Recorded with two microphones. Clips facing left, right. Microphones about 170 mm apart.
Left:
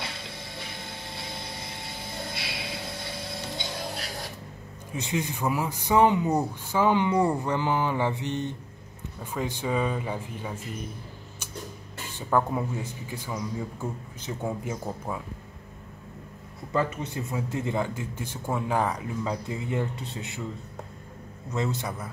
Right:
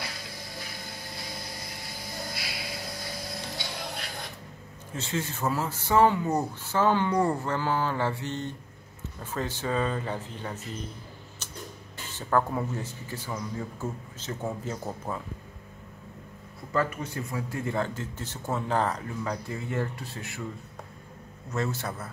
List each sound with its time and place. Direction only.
0.0 s a sound: 25° left (ahead or behind)
4.9 s a man's voice: 15° left (ahead or behind)
12.1 s a man's voice: 10° left (ahead or behind)
16.7 s a man's voice: 20° left (ahead or behind)
21.5 s a man's voice: 15° left (ahead or behind)